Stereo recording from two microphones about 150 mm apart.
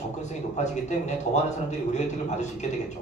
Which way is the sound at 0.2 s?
50° left (ahead or behind).